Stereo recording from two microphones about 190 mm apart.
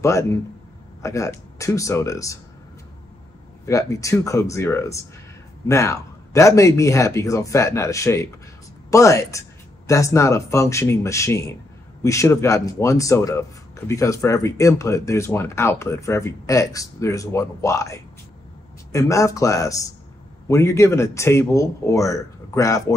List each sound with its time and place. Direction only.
0.0 s speech: 15° left (ahead or behind)
3.6 s speech: 15° left (ahead or behind)